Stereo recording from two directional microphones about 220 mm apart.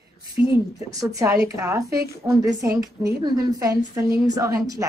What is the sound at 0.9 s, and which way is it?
A woman's voice, 15° right (ahead or behind).